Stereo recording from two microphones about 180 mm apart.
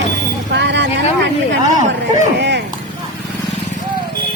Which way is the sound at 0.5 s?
75° right (ahead or behind).